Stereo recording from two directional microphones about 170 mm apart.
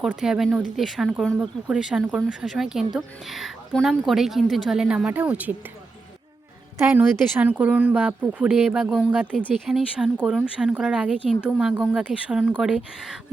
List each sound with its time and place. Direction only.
0.0 s a woman's voice: 5° right (ahead or behind)
6.7 s a woman's voice: 10° right (ahead or behind)